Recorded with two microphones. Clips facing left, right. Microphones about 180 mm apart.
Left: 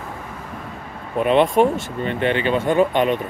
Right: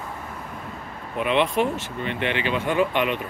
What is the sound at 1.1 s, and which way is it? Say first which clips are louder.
Speech: left 6 dB; 40° left (ahead or behind).